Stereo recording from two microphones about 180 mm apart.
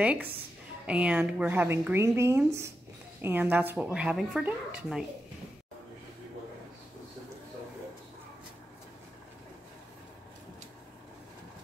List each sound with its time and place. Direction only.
0.0 s speech: 5° right (ahead or behind)